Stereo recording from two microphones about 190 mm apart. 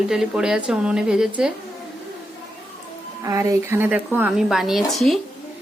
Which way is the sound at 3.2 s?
15° right (ahead or behind).